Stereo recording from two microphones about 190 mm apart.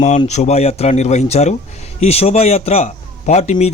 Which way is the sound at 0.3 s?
35° left (ahead or behind).